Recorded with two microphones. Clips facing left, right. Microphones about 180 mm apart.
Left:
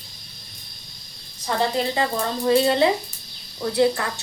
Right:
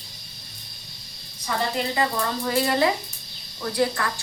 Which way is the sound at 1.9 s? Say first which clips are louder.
Left 1 dB; 25° left (ahead or behind).